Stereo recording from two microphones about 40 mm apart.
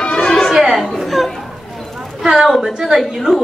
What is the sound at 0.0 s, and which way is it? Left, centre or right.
Music, left.